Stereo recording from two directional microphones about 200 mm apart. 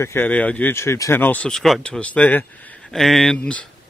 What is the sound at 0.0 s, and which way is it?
Speech, 10° left (ahead or behind).